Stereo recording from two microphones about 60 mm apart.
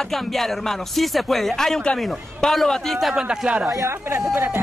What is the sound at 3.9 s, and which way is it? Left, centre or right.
Speech, right.